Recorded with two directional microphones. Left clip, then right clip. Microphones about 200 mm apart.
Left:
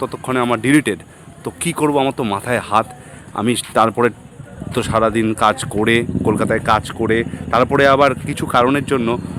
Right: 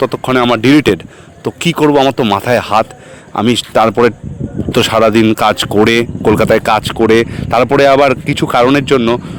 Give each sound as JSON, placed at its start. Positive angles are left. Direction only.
{"t": 0.0, "sound": "speech", "side_deg": -35}